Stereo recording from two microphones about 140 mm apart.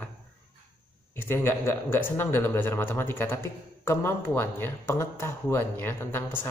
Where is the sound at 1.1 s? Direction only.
15° left (ahead or behind).